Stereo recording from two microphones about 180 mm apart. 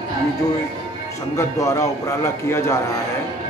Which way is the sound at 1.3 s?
15° left (ahead or behind).